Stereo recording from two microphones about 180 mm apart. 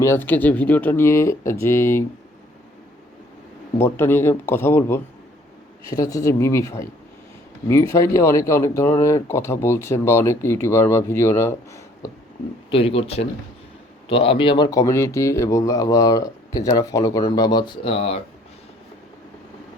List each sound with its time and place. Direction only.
0.0 s speech: 10° left (ahead or behind)
3.8 s speech: 15° left (ahead or behind)
12.7 s speech: 30° left (ahead or behind)